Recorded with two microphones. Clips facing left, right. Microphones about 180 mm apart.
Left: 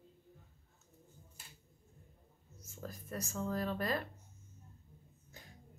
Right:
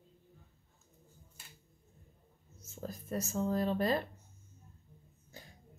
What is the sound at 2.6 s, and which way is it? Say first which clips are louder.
Speech: right 5 dB; 25° right (ahead or behind).